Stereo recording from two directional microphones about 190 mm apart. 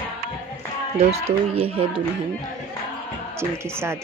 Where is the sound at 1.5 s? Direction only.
30° right (ahead or behind).